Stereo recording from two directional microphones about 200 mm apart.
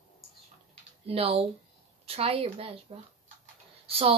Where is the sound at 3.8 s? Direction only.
30° right (ahead or behind).